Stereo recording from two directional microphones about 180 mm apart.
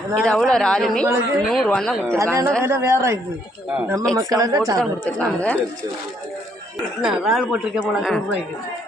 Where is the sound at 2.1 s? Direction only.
15° right (ahead or behind).